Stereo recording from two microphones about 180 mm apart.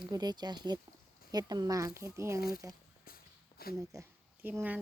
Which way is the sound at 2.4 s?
55° left (ahead or behind).